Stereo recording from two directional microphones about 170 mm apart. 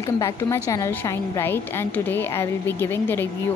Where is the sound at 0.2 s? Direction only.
20° left (ahead or behind).